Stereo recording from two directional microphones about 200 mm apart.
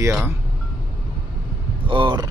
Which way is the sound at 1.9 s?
25° right (ahead or behind).